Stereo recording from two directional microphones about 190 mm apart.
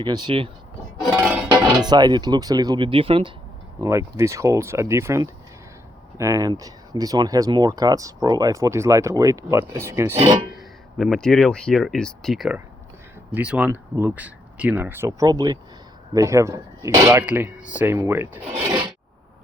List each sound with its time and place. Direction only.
0.0 s speech: 25° right (ahead or behind)
1.1 s music: 5° right (ahead or behind)
1.7 s speech: 20° right (ahead or behind)
3.8 s speech: 15° right (ahead or behind)
10.5 s speech: centre (ahead or behind)